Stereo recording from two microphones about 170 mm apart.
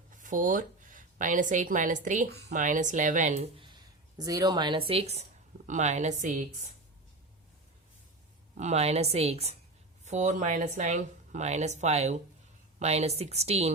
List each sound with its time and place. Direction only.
0.1 s speech: 50° right (ahead or behind)
4.2 s a woman's voice: 20° right (ahead or behind); by 6.7 s 45° right (ahead or behind)
8.5 s a woman's voice: 40° right (ahead or behind)